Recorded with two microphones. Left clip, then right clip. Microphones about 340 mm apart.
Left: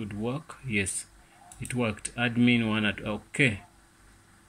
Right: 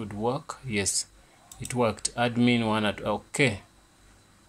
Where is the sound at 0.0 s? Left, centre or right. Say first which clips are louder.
Right 5 dB; right.